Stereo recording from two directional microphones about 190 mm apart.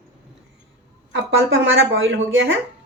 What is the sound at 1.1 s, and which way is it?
A woman's voice, 90° right.